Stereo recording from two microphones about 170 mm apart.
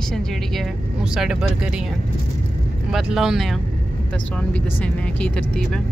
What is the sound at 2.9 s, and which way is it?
Speech, 5° right (ahead or behind).